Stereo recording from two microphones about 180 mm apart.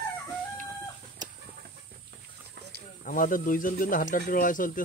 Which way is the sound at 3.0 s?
50° left (ahead or behind).